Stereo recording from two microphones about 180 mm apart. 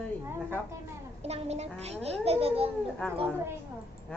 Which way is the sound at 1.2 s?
35° right (ahead or behind).